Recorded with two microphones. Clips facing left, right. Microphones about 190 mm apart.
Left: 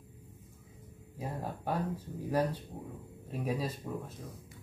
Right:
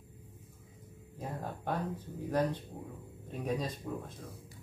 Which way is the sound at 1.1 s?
10° left (ahead or behind).